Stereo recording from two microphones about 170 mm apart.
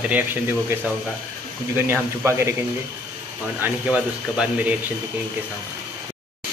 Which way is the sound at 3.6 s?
10° right (ahead or behind).